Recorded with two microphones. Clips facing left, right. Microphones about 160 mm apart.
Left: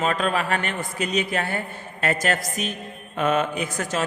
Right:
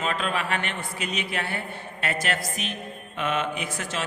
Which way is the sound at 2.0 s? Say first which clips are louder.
Left 5 dB; 40° left (ahead or behind).